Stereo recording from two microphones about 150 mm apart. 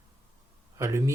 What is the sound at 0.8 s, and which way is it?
Speech, 20° right (ahead or behind).